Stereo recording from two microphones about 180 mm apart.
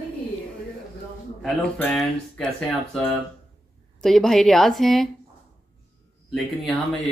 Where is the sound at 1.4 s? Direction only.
5° left (ahead or behind).